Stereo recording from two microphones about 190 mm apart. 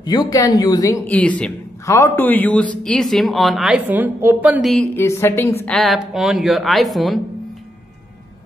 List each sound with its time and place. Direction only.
0.0 s speech: 20° left (ahead or behind)
1.0 s a man's voice: 5° left (ahead or behind); by 4.7 s 10° right (ahead or behind)
4.7 s a man's voice: 15° left (ahead or behind)